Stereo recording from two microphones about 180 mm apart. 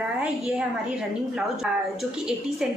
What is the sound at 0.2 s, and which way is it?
A woman's voice, 5° right (ahead or behind).